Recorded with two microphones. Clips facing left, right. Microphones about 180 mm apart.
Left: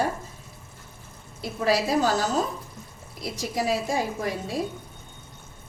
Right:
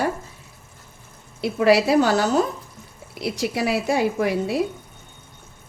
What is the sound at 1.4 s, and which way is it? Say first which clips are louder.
A woman's voice: right 7 dB; 70° right (ahead or behind).